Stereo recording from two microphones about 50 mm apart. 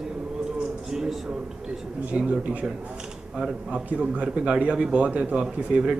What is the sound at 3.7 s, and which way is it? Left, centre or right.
A man's voice, right.